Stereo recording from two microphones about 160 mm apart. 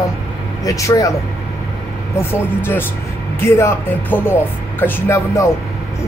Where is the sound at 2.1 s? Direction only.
15° left (ahead or behind).